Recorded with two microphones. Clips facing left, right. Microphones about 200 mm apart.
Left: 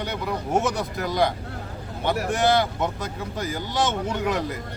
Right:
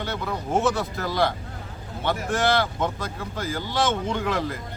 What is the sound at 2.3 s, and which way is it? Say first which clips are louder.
Speech: left 1 dB; 15° left (ahead or behind).